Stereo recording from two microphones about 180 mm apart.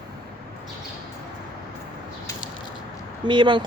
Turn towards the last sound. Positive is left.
turn(degrees=-25)  # may be behind; listen again after turning